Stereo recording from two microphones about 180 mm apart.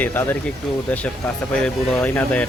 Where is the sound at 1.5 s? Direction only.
5° left (ahead or behind).